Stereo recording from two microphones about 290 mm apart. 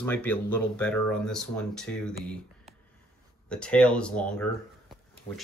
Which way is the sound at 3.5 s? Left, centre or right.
Centre.